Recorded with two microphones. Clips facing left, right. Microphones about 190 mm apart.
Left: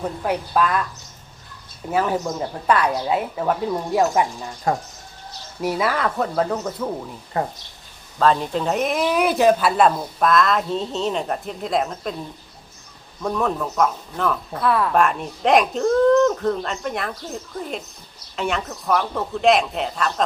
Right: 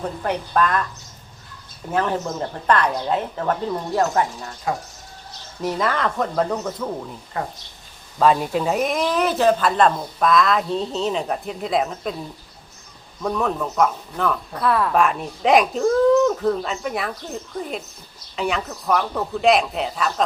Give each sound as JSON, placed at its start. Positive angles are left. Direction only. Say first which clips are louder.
{"t": 0.0, "sound": "speech", "louder": "left 1 dB", "side_deg": 5}
{"t": 1.9, "sound": "speech", "louder": "left 1 dB", "side_deg": 10}
{"t": 5.6, "sound": "speech", "louder": "left 1 dB", "side_deg": 10}
{"t": 7.3, "sound": "speech", "louder": "left 4 dB", "side_deg": 35}
{"t": 8.2, "sound": "speech", "louder": "right 1 dB", "side_deg": -10}
{"t": 13.2, "sound": "speech", "louder": "even", "side_deg": 0}